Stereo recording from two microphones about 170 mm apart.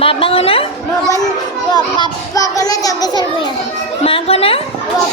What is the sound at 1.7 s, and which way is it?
A child's voice, 20° left (ahead or behind).